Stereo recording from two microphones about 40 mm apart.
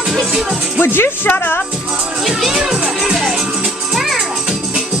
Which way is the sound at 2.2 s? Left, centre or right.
Centre.